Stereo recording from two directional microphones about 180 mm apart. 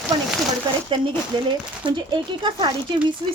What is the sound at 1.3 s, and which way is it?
A woman's voice, 30° right (ahead or behind).